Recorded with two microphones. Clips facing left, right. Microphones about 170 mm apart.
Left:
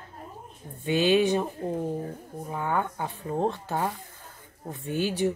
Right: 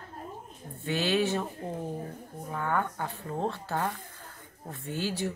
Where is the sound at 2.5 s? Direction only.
15° left (ahead or behind).